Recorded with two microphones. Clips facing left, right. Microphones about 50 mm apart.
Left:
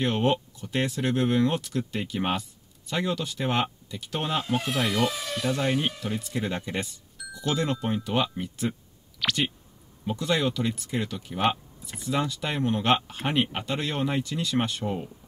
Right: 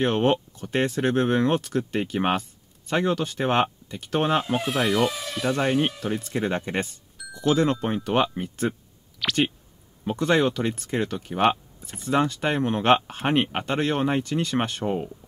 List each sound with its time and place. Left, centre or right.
0.0 s speech: right
4.6 s speech: centre
5.6 s speech: right
7.2 s music: centre
7.8 s speech: right
9.2 s speech: centre
10.0 s speech: right
14.9 s speech: right